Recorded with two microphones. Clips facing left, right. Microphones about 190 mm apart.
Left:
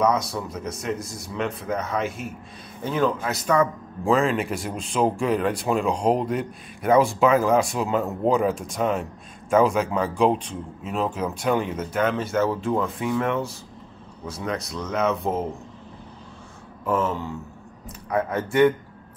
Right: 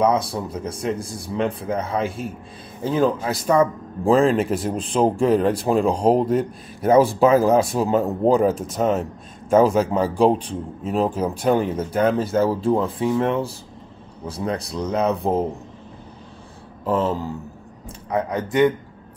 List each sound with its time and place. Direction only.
0.0 s speech: 30° right (ahead or behind)
16.8 s speech: 30° right (ahead or behind)
17.8 s a man's voice: 20° right (ahead or behind)